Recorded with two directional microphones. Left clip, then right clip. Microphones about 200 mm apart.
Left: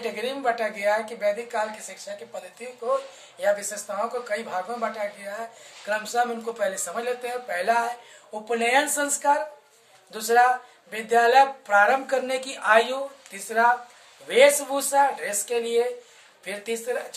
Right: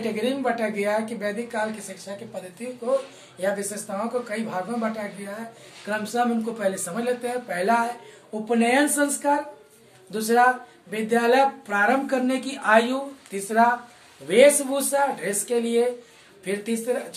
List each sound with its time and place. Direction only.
0.1 s speech: 20° left (ahead or behind)
3.3 s speech: 15° left (ahead or behind)